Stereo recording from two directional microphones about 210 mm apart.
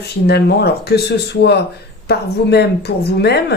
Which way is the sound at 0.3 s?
50° left (ahead or behind).